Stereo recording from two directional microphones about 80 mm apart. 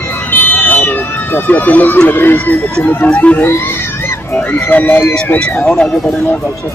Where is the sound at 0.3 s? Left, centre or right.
Left.